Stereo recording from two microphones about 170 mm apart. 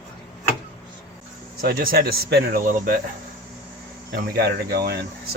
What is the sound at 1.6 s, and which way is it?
Speech, 60° right (ahead or behind).